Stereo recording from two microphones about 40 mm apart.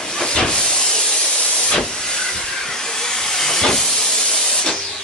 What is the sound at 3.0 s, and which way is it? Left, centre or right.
Hiss, centre.